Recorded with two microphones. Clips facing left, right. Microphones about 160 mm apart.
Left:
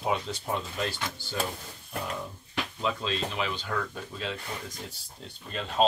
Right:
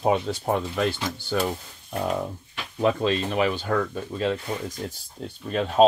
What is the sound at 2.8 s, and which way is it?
Speech, 60° right (ahead or behind).